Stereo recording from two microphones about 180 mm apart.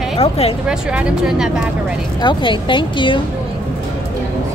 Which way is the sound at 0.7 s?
5° right (ahead or behind).